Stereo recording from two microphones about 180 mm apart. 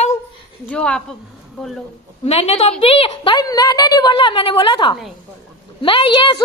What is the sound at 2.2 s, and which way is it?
A woman's voice, 35° left (ahead or behind).